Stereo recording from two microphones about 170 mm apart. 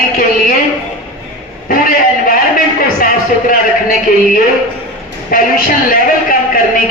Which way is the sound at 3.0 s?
55° left (ahead or behind).